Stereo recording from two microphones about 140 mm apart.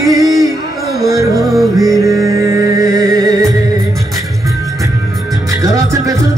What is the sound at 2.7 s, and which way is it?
Music, 25° right (ahead or behind).